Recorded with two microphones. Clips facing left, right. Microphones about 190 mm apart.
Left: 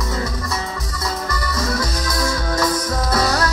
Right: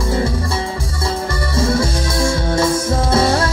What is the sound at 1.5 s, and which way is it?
Music, 30° right (ahead or behind).